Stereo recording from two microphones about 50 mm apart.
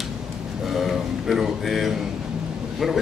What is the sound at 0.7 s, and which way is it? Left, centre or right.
Mantra, centre.